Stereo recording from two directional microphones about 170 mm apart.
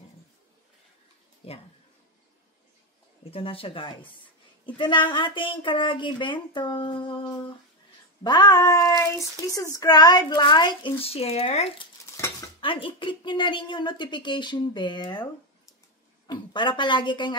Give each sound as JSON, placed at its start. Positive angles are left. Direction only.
{"t": 1.4, "sound": "speech", "side_deg": 35}
{"t": 3.3, "sound": "speech", "side_deg": 35}
{"t": 8.2, "sound": "speech", "side_deg": 25}
{"t": 12.2, "sound": "speech", "side_deg": 25}
{"t": 16.3, "sound": "speech", "side_deg": 25}